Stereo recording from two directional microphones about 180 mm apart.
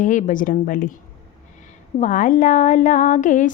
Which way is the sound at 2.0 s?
45° left (ahead or behind).